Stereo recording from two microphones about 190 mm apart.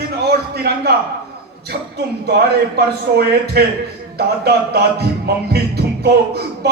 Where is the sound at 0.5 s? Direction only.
55° right (ahead or behind).